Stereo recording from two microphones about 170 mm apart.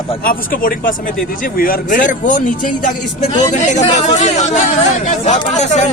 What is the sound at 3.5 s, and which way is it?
Speech, 45° left (ahead or behind).